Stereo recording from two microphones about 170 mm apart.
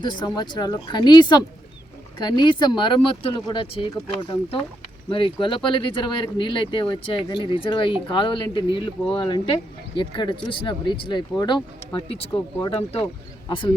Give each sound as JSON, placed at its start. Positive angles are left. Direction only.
{"t": 0.0, "sound": "speech", "side_deg": 25}
{"t": 12.3, "sound": "speech", "side_deg": 20}
{"t": 12.7, "sound": "speech", "side_deg": 35}